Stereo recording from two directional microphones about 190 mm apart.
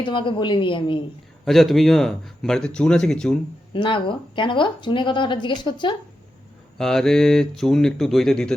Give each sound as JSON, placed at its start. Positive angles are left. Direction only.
{"t": 0.0, "sound": "speech", "side_deg": 25}
{"t": 1.5, "sound": "speech", "side_deg": 0}
{"t": 3.7, "sound": "speech", "side_deg": 25}
{"t": 6.7, "sound": "speech", "side_deg": 0}